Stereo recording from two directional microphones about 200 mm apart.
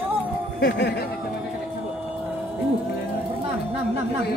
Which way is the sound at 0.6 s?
60° left (ahead or behind).